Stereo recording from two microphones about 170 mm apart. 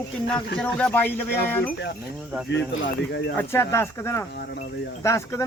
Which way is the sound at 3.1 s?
80° left.